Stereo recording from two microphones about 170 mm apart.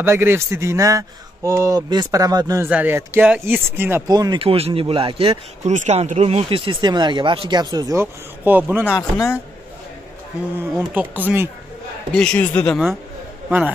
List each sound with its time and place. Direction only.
0.0 s speech: 15° right (ahead or behind)
8.8 s speech: 15° left (ahead or behind)
10.9 s speech: 10° right (ahead or behind)
12.2 s a man's voice: 5° left (ahead or behind)